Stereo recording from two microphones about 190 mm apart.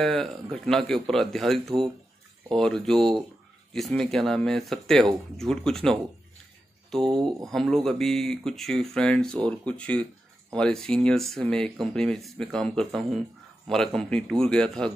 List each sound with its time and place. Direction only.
0.0 s speech: centre (ahead or behind)
7.1 s speech: 25° right (ahead or behind)
7.4 s speech: centre (ahead or behind)